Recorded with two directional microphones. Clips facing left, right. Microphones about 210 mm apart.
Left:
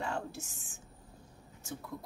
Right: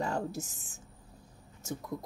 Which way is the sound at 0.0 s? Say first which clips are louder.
Right 4 dB; 40° right (ahead or behind).